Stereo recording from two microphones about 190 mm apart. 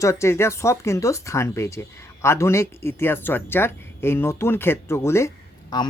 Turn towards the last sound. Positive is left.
turn(degrees=20)  # may be behind; listen again after turning